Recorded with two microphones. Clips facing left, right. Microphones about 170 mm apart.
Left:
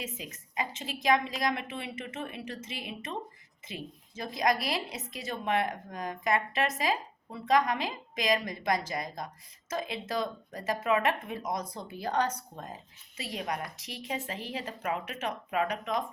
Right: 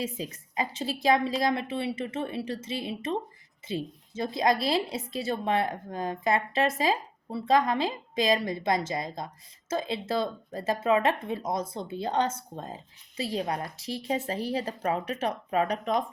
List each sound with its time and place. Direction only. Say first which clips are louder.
0.0 s a woman's voice: right 7 dB; 30° right (ahead or behind)